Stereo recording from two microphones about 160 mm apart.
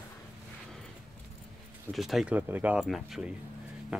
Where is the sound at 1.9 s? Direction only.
Centre (ahead or behind).